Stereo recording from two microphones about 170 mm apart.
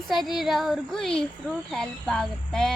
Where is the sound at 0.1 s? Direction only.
Centre (ahead or behind).